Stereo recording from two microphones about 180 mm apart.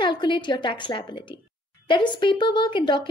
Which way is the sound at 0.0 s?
25° left (ahead or behind).